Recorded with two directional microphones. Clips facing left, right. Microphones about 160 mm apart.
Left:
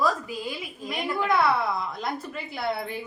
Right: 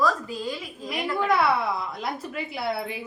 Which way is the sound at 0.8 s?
5° right (ahead or behind).